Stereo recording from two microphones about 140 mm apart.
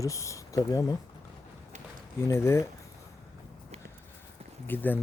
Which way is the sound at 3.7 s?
50° right (ahead or behind).